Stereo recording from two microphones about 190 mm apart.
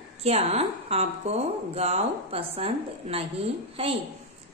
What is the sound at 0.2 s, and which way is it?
A woman's voice, 30° right (ahead or behind).